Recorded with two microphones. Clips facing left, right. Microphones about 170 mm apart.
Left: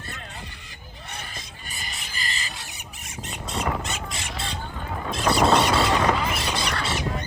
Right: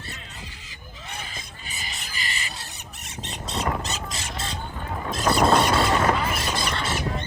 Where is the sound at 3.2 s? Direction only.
35° right (ahead or behind).